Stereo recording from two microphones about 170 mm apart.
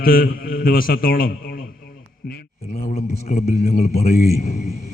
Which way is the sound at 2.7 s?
45° left (ahead or behind).